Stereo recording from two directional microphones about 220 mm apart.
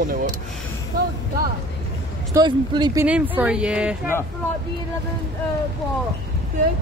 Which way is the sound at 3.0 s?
5° right (ahead or behind).